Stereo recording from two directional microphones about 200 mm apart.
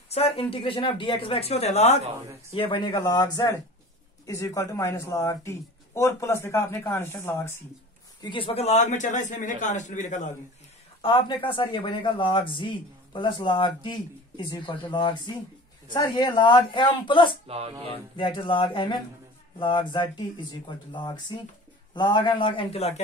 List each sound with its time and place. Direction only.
0.1 s speech: 30° left (ahead or behind)
4.3 s speech: 15° left (ahead or behind)
8.2 s a man's voice: 25° left (ahead or behind)
11.0 s speech: 25° left (ahead or behind)
17.5 s speech: 30° right (ahead or behind)
17.8 s speech: 25° left (ahead or behind)